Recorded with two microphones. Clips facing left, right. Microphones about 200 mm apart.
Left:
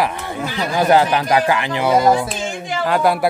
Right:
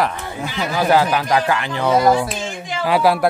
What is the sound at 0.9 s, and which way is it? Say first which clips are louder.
Speech: left 1 dB; 20° left (ahead or behind).